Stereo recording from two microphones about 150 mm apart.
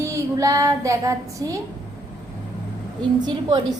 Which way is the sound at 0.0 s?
20° right (ahead or behind).